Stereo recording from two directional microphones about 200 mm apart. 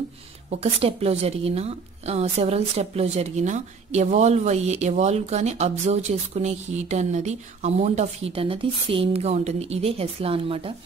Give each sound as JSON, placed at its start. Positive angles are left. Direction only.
{"t": 0.5, "sound": "speech", "side_deg": -30}